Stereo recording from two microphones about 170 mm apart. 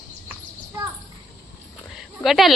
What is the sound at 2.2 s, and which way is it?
Speech, centre (ahead or behind).